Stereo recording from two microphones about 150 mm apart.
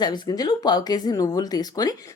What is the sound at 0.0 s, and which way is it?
Speech, 25° left (ahead or behind).